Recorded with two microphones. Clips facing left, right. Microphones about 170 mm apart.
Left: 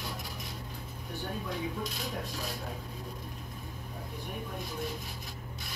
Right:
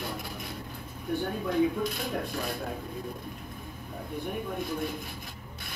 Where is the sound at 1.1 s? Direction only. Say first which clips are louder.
Right 9 dB; 55° right (ahead or behind).